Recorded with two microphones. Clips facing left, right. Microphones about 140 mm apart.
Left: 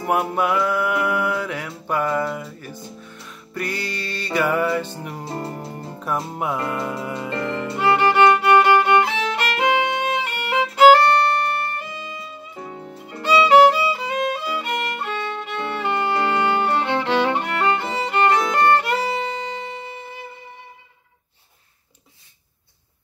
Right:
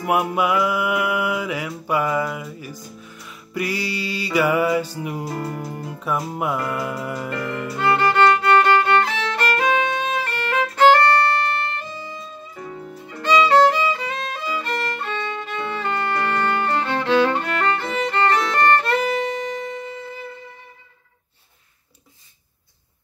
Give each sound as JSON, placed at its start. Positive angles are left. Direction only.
{"t": 0.0, "sound": "music", "side_deg": -5}
{"t": 5.2, "sound": "music", "side_deg": 25}
{"t": 5.9, "sound": "music", "side_deg": 0}
{"t": 7.2, "sound": "music", "side_deg": 25}
{"t": 8.5, "sound": "violin", "side_deg": 15}
{"t": 11.6, "sound": "music", "side_deg": 10}
{"t": 12.5, "sound": "music", "side_deg": 35}
{"t": 13.2, "sound": "violin", "side_deg": 5}
{"t": 16.1, "sound": "music", "side_deg": 20}
{"t": 17.8, "sound": "violin", "side_deg": 20}